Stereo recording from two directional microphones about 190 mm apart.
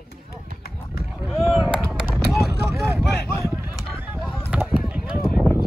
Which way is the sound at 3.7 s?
5° right (ahead or behind).